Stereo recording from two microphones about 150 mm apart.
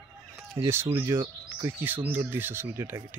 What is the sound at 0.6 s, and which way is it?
Speech, 15° right (ahead or behind).